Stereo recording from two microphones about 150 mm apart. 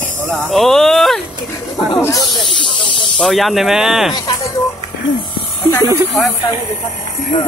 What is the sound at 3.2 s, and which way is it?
Speech, centre (ahead or behind).